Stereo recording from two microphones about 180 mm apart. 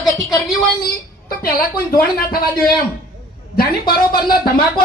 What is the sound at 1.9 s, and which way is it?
A man's voice, 55° left (ahead or behind).